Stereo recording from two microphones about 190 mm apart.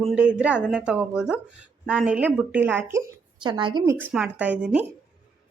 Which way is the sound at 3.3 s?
25° right (ahead or behind).